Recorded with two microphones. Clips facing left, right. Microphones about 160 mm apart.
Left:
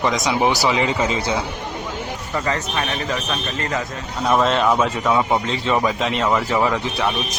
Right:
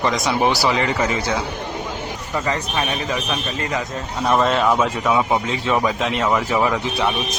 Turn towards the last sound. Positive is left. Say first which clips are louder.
# right 1 dB
turn(degrees=-20)  # may be behind; listen again after turning